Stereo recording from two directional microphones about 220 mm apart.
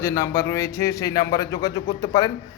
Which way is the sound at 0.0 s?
15° left (ahead or behind).